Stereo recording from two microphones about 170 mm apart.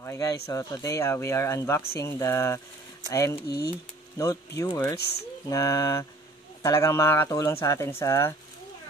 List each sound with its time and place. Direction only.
0.0 s speech: 15° left (ahead or behind)